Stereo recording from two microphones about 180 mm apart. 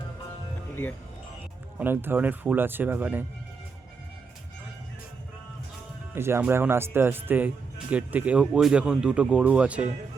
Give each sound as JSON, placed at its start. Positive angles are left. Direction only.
{"t": 1.8, "sound": "speech", "side_deg": -10}
{"t": 6.1, "sound": "speech", "side_deg": -15}